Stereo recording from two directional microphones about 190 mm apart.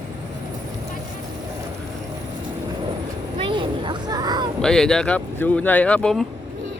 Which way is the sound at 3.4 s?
25° right (ahead or behind).